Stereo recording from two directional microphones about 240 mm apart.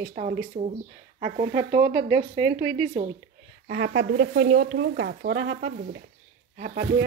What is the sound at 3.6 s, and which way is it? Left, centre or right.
Speech, right.